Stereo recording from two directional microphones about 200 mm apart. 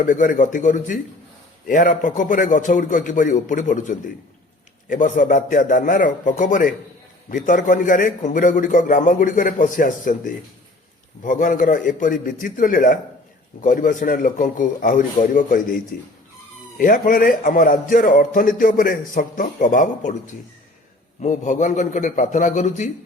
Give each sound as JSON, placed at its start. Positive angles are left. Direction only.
{"t": 0.0, "sound": "a man's voice", "side_deg": 40}
{"t": 21.2, "sound": "a man's voice", "side_deg": 40}